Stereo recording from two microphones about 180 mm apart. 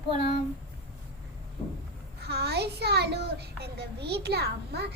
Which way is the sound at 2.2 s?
65° right (ahead or behind).